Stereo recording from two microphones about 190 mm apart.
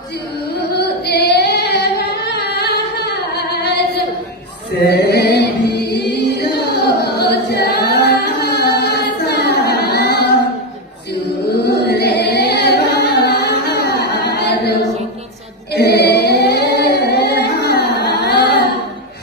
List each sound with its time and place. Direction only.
0.7 s female singing: 60° left (ahead or behind)
4.8 s chant: 60° left (ahead or behind)
11.6 s music: 60° left (ahead or behind)
15.7 s singing: 60° left (ahead or behind)